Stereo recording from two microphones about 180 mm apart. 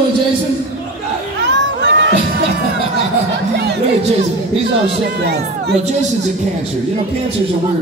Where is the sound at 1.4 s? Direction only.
80° right.